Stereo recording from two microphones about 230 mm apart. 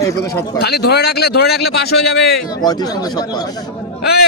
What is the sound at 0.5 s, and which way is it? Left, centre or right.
Speech, left.